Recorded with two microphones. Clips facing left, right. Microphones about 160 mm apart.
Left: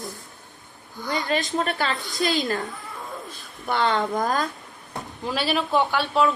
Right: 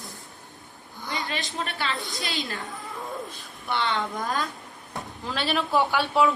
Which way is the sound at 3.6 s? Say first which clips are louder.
Left 5 dB; 45° left (ahead or behind).